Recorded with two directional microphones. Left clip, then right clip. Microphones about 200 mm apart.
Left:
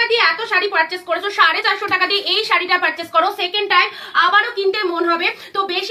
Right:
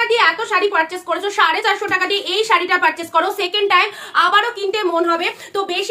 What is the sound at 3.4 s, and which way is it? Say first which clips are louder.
A woman's voice: right 1 dB; 50° right (ahead or behind).